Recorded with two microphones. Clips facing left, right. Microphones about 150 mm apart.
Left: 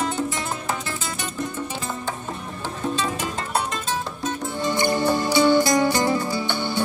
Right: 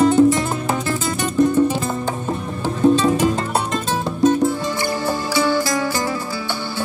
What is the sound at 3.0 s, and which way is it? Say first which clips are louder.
Music: right 10 dB; 35° right (ahead or behind).